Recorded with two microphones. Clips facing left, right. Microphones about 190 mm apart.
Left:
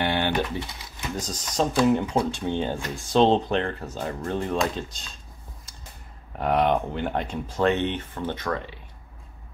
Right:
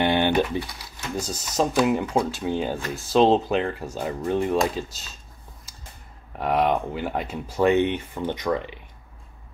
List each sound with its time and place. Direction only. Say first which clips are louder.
0.0 s typing: right 4 dB; 15° right (ahead or behind)
0.6 s pigeon: right 3 dB; 20° left (ahead or behind)
1.1 s speech: right 2 dB; 10° right (ahead or behind)
6.3 s speech: even; centre (ahead or behind); by 8.7 s 15° right (ahead or behind)